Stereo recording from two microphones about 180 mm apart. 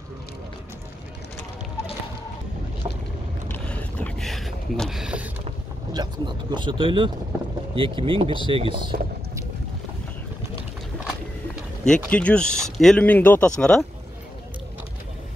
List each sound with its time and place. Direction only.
3.4 s boat: 10° left (ahead or behind)
5.9 s speech: 25° right (ahead or behind)
11.8 s speech: 5° left (ahead or behind)